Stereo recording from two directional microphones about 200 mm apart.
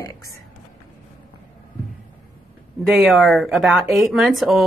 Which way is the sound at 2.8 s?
Centre (ahead or behind).